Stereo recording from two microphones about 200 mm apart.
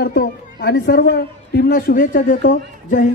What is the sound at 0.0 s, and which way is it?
A woman's voice, 50° left (ahead or behind).